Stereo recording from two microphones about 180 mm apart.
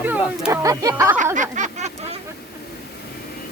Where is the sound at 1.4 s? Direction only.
40° right (ahead or behind).